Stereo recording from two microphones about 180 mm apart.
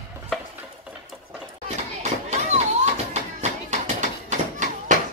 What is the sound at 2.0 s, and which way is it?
Music, 40° right (ahead or behind).